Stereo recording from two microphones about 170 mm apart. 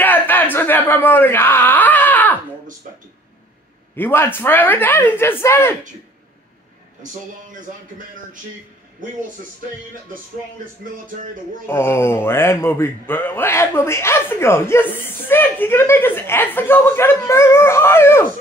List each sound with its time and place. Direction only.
0.0 s a sound: 10° left (ahead or behind)
3.9 s speech: 15° left (ahead or behind)
9.0 s speech: 50° right (ahead or behind)
11.6 s speech: 15° left (ahead or behind)